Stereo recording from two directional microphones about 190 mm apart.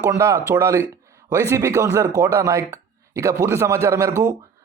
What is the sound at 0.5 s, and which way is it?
A man's voice, 15° right (ahead or behind).